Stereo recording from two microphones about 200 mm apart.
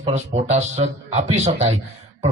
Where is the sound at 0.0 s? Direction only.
35° right (ahead or behind).